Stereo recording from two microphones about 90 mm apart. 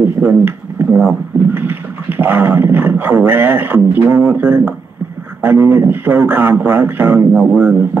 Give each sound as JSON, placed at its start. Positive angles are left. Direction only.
{"t": 0.0, "sound": "speech", "side_deg": -25}